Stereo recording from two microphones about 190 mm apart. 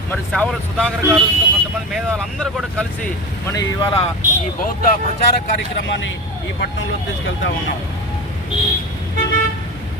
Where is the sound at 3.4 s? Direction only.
20° left (ahead or behind).